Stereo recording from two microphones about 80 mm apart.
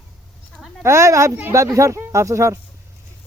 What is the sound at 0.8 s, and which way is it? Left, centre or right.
Speech, right.